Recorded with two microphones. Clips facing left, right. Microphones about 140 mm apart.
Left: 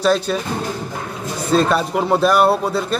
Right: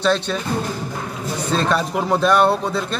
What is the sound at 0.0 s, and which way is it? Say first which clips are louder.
Speech: left 2 dB; 10° left (ahead or behind).